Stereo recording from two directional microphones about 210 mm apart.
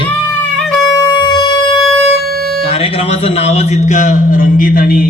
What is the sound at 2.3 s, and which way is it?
Music, 45° right (ahead or behind).